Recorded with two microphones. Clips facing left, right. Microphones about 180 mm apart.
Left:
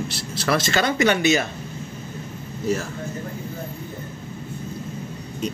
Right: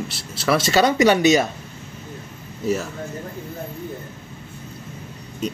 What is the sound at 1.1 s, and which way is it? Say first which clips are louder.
Speech: right 4 dB; 40° right (ahead or behind).